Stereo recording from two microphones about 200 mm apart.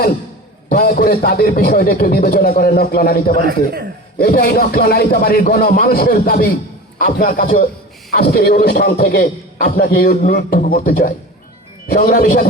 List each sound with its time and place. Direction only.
0.7 s a man's voice: 45° left (ahead or behind)
3.4 s a man's voice: 55° right (ahead or behind)
4.2 s a man's voice: 50° left (ahead or behind)